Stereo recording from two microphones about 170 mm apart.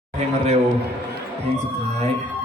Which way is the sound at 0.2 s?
40° right (ahead or behind).